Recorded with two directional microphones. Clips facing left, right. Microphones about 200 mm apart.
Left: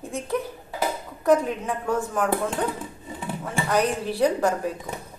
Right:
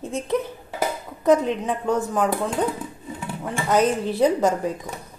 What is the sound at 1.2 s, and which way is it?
Speech, 20° right (ahead or behind).